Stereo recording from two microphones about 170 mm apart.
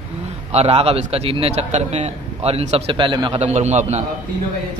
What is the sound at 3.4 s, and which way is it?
Speech, 40° right (ahead or behind).